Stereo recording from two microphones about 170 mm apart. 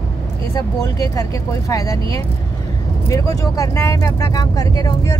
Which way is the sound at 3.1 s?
20° left (ahead or behind).